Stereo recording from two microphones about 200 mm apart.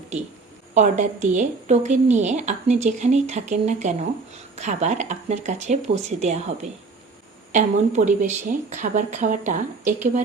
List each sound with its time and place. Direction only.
0.7 s a woman's voice: 35° right (ahead or behind)